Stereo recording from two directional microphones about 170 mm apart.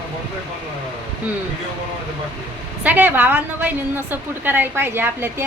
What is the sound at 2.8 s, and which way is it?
A woman's voice, 10° right (ahead or behind).